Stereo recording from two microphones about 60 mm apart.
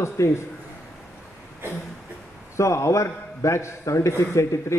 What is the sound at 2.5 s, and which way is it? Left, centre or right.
A man's voice, left.